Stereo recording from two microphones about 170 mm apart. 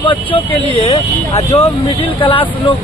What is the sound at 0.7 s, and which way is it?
Speech, 35° left (ahead or behind).